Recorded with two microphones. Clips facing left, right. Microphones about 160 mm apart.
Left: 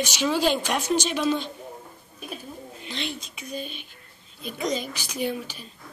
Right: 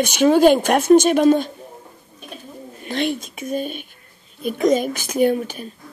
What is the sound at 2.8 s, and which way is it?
Speech, 50° right (ahead or behind).